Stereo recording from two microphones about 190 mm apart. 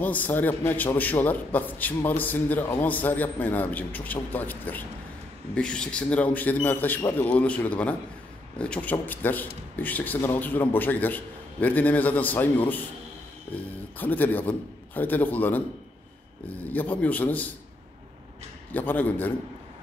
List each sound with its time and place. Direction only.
0.0 s a man's voice: 10° left (ahead or behind)
13.9 s a man's voice: 10° left (ahead or behind)
16.7 s a man's voice: 10° left (ahead or behind)
18.7 s a man's voice: 10° left (ahead or behind)